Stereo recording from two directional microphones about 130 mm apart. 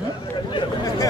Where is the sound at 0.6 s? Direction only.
30° left (ahead or behind).